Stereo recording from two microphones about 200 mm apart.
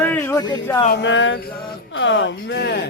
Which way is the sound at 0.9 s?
60° left (ahead or behind).